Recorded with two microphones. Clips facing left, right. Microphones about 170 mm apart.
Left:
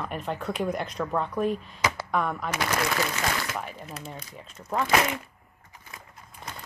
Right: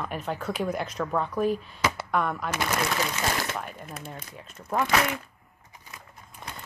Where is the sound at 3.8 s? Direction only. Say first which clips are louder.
Even; 55° right (ahead or behind).